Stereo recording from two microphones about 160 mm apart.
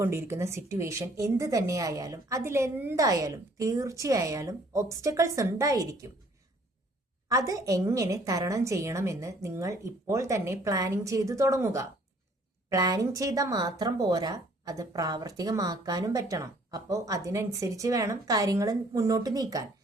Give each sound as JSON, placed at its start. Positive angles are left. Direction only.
{"t": 0.0, "sound": "speech", "side_deg": -15}
{"t": 7.3, "sound": "speech", "side_deg": -20}